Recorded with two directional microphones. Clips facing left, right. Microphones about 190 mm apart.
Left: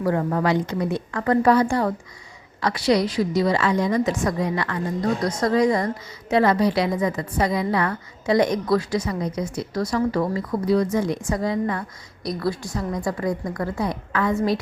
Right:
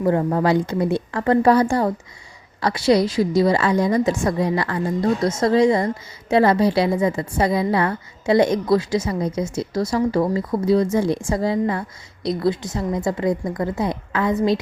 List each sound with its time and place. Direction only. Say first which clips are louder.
0.0 s a woman's voice: right 3 dB; 25° right (ahead or behind)